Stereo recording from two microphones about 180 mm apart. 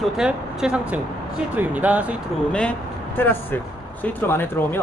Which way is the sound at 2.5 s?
5° left (ahead or behind).